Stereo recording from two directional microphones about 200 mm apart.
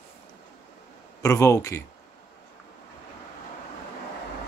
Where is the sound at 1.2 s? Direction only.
15° left (ahead or behind).